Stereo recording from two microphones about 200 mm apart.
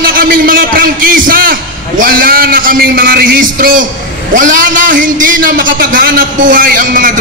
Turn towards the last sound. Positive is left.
turn(degrees=-45)  # may be behind; listen again after turning